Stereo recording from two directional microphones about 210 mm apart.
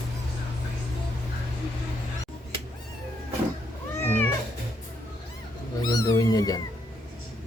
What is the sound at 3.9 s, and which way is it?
Cat, 10° left (ahead or behind).